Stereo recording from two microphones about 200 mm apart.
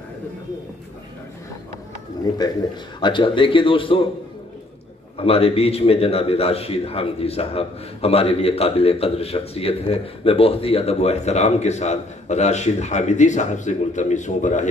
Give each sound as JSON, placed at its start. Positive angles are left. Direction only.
{"t": 3.0, "sound": "speech", "side_deg": 25}
{"t": 5.1, "sound": "a man's voice", "side_deg": 30}